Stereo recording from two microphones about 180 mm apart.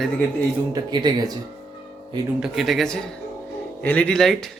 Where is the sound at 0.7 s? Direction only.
20° right (ahead or behind).